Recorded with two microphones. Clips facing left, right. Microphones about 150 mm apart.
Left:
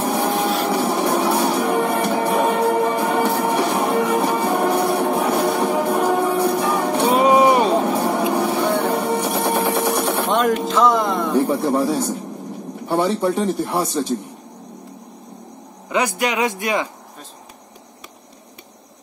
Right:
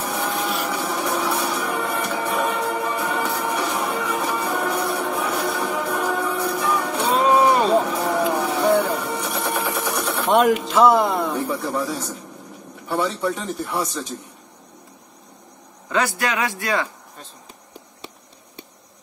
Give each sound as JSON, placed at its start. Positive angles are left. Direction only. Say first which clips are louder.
{"t": 0.0, "sound": "a sound", "louder": "left 6 dB", "side_deg": 35}
{"t": 0.7, "sound": "music", "louder": "left 6 dB", "side_deg": 35}
{"t": 7.2, "sound": "music", "louder": "left 2 dB", "side_deg": 20}
{"t": 10.3, "sound": "a sound", "louder": "right 3 dB", "side_deg": -5}
{"t": 10.7, "sound": "speech", "louder": "right 1 dB", "side_deg": -5}
{"t": 11.3, "sound": "speech", "louder": "left 7 dB", "side_deg": 35}
{"t": 15.9, "sound": "a man's voice", "louder": "left 2 dB", "side_deg": 15}